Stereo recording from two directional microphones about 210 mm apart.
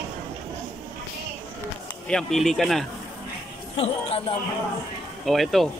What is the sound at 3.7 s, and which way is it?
Speech, 30° left (ahead or behind).